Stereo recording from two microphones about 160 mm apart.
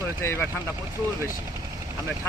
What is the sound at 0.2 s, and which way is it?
Speech, 15° left (ahead or behind).